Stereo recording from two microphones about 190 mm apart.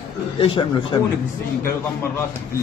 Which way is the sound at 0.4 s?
25° left (ahead or behind).